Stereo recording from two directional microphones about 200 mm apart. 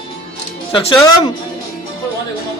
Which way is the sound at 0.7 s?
25° left (ahead or behind).